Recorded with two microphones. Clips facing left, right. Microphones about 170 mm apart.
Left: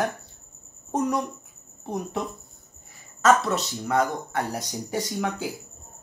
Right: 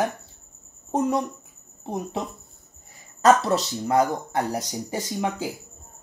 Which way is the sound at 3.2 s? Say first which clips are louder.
Right 2 dB; 35° right (ahead or behind).